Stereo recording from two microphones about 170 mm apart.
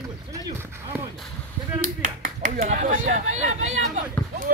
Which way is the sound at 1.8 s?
50° right (ahead or behind).